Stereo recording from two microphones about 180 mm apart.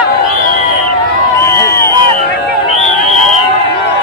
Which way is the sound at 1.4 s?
15° left (ahead or behind).